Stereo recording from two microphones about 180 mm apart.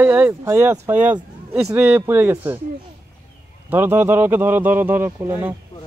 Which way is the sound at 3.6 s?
10° right (ahead or behind).